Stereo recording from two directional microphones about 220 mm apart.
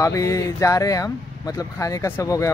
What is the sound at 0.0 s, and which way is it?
Speech, 15° left (ahead or behind).